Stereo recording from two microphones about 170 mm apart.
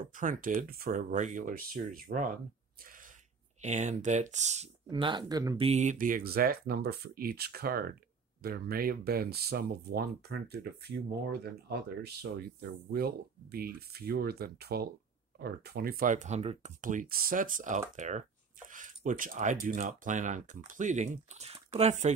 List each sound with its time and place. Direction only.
0.0 s speech: 50° right (ahead or behind)
3.6 s speech: 45° right (ahead or behind)
4.8 s speech: 30° right (ahead or behind)
5.6 s speech: 40° right (ahead or behind)